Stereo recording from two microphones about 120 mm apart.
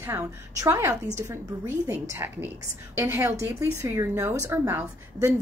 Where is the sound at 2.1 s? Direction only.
20° right (ahead or behind).